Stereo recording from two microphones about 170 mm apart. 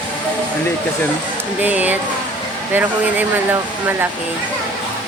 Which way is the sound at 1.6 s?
10° right (ahead or behind).